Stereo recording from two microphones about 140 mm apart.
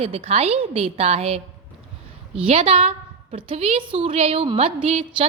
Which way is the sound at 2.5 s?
45° right (ahead or behind).